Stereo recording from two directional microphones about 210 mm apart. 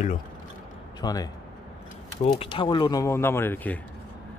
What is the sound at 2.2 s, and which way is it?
Speech, 25° left (ahead or behind).